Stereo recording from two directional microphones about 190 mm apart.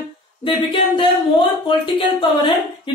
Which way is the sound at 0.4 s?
25° left (ahead or behind).